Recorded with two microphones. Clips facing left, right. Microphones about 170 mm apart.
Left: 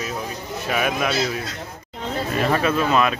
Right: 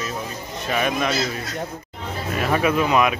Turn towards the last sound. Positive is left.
turn(degrees=-15)  # may be behind; listen again after turning